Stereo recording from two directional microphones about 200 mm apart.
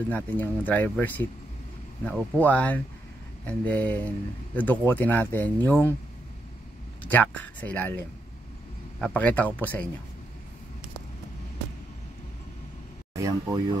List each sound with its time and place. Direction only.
0.1 s speech: 10° left (ahead or behind)
7.0 s speech: 10° left (ahead or behind)
9.0 s speech: 10° left (ahead or behind)
13.1 s speech: 15° right (ahead or behind)